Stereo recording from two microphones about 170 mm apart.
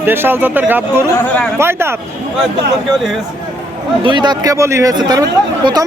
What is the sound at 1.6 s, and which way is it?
Speech, 15° right (ahead or behind).